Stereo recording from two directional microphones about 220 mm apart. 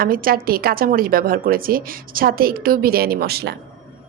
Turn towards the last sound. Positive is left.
turn(degrees=-45)  # may be behind; listen again after turning